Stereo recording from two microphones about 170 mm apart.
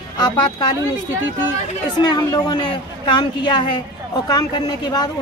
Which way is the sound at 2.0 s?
25° left (ahead or behind).